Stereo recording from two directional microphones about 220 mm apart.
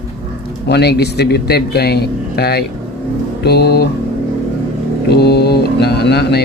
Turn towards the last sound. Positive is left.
turn(degrees=45)  # may be behind; listen again after turning